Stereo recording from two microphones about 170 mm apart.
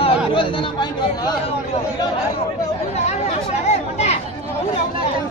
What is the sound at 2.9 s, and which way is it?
Chatter, 40° left (ahead or behind).